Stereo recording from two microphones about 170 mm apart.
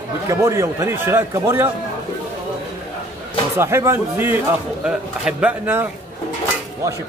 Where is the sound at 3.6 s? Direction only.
15° right (ahead or behind).